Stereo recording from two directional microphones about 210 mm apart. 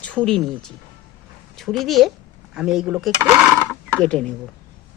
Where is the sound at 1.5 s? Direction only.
Centre (ahead or behind).